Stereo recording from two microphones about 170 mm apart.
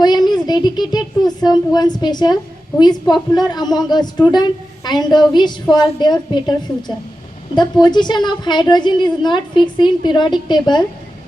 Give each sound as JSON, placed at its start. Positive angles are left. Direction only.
{"t": 0.0, "sound": "speech", "side_deg": 25}